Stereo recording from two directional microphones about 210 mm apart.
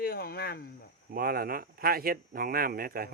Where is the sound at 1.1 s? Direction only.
45° right (ahead or behind).